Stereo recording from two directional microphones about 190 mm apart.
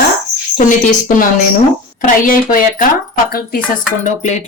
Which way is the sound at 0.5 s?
45° left (ahead or behind).